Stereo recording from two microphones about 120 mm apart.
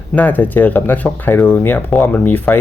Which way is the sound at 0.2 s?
15° left (ahead or behind).